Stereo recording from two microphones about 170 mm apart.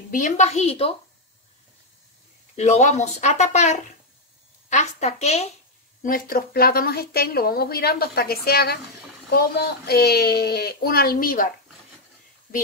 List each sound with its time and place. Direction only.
0.1 s speech: 45° left (ahead or behind)
2.5 s speech: 40° left (ahead or behind)
6.0 s a woman's voice: 55° left (ahead or behind)